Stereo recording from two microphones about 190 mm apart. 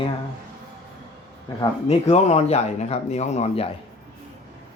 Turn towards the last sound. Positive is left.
turn(degrees=35)  # may be behind; listen again after turning